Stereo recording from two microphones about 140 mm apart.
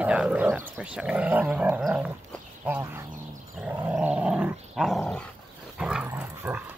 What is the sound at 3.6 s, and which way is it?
Dog, 10° right (ahead or behind).